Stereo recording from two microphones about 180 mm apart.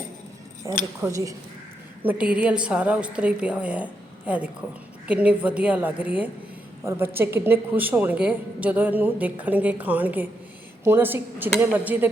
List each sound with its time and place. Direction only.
1.0 s a woman's voice: 15° right (ahead or behind)
2.0 s a woman's voice: 5° right (ahead or behind)